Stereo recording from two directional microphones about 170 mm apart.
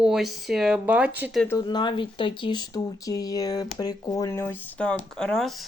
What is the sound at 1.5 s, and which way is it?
Speech, 25° left (ahead or behind).